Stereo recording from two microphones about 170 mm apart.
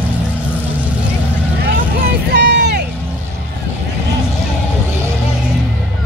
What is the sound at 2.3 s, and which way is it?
Vehicle, 90° right.